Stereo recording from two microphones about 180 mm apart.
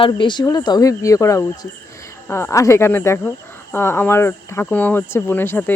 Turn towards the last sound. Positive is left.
turn(degrees=10)  # may be behind; listen again after turning